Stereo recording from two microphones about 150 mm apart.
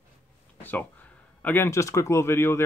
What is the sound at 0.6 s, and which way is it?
Speech, 10° left (ahead or behind).